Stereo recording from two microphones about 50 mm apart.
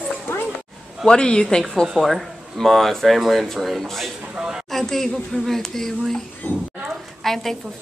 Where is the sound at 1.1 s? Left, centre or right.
Centre.